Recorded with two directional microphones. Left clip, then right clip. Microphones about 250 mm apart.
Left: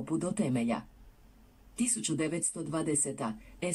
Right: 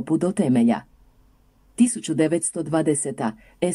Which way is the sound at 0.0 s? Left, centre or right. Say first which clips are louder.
Right 11 dB; right.